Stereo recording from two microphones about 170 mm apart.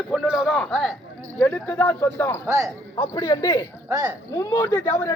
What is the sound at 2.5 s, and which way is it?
Speech, 15° right (ahead or behind).